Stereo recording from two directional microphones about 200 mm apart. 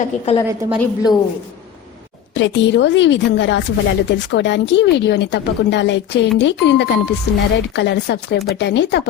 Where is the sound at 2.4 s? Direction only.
65° left (ahead or behind).